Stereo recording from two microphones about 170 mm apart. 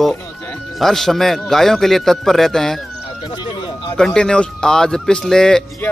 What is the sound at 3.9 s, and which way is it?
Speech, 5° left (ahead or behind).